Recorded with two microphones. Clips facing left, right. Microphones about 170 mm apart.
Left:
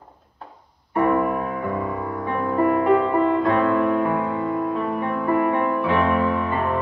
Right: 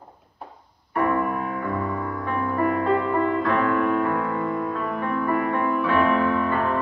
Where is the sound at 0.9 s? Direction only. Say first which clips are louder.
Left 3 dB; 20° left (ahead or behind).